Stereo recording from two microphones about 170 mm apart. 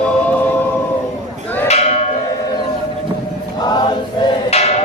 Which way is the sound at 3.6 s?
25° left (ahead or behind).